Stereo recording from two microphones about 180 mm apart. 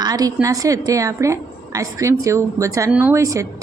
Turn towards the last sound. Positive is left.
turn(degrees=-15)  # may be behind; listen again after turning